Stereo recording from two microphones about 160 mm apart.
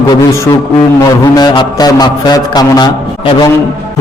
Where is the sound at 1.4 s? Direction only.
25° left (ahead or behind).